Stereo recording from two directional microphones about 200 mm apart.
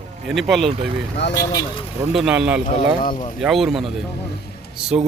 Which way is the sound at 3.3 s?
Centre (ahead or behind).